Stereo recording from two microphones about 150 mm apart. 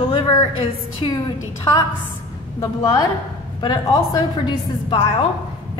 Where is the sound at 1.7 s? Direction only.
20° left (ahead or behind).